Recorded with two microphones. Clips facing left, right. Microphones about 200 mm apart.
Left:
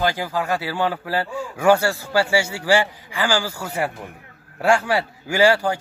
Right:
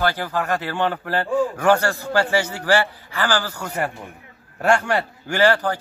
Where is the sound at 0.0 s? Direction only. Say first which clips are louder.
Even; 10° left (ahead or behind).